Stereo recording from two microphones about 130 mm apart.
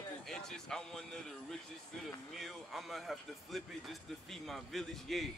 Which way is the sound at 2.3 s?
Centre (ahead or behind).